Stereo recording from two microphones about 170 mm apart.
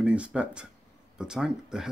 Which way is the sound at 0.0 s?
5° right (ahead or behind).